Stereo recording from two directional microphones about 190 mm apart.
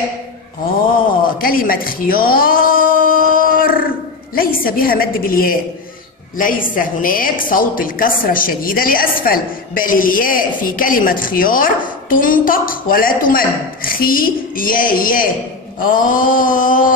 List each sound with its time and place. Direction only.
1.4 s a woman's voice: 50° left (ahead or behind)
3.3 s a sound: 50° left (ahead or behind)
4.4 s a woman's voice: 50° left (ahead or behind)